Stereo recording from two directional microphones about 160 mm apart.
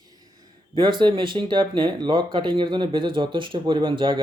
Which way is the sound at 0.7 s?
30° right (ahead or behind).